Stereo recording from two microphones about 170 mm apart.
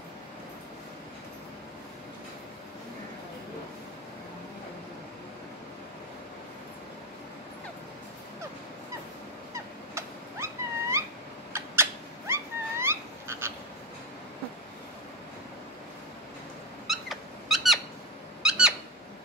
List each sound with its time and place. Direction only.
9.5 s cat: 15° right (ahead or behind)
16.9 s squeak: centre (ahead or behind)